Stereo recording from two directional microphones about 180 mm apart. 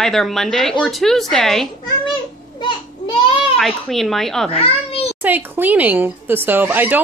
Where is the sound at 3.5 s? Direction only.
Centre (ahead or behind).